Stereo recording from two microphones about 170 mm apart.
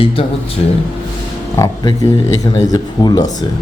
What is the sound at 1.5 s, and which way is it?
Speech, 20° left (ahead or behind).